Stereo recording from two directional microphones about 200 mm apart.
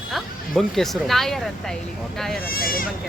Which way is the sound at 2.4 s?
45° left (ahead or behind).